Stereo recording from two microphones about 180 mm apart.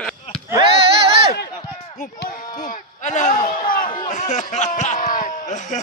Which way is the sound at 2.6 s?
45° left (ahead or behind).